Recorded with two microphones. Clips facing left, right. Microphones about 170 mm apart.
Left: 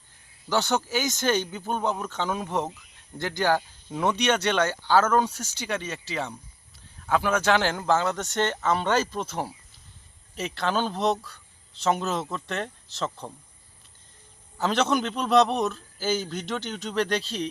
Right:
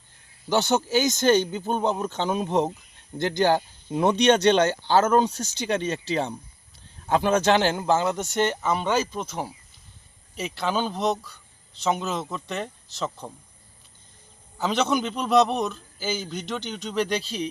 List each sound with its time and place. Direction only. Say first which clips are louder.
0.5 s a man's voice: right 3 dB; 20° right (ahead or behind); by 13.3 s centre (ahead or behind)
14.6 s a man's voice: even; centre (ahead or behind)